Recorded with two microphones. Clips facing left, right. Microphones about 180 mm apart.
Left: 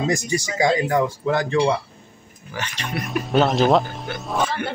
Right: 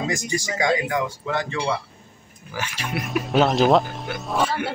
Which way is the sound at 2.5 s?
5° right (ahead or behind).